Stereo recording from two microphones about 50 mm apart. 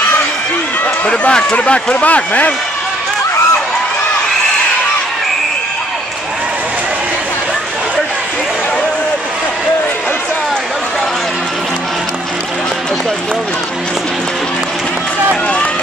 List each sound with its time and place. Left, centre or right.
1.0 s a man's voice: left